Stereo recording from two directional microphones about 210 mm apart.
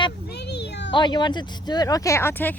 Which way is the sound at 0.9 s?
20° left (ahead or behind).